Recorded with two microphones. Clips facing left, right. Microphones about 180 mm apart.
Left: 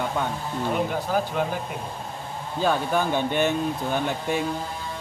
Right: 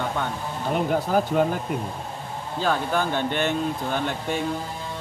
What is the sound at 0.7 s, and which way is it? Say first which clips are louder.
Speech: right 5 dB; 45° right (ahead or behind).